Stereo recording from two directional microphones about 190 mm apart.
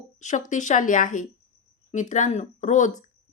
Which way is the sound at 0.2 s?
40° left (ahead or behind).